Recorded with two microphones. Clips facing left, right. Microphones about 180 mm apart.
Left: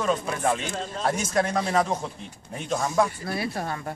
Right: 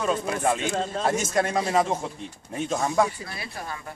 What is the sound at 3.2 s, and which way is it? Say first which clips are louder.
Speech: left 7 dB; 50° left (ahead or behind).